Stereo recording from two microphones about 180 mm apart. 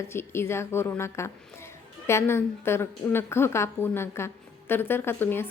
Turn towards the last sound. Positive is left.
turn(degrees=10)  # may be behind; listen again after turning